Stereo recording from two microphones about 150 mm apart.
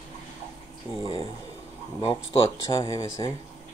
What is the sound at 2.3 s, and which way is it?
Speech, 35° left (ahead or behind).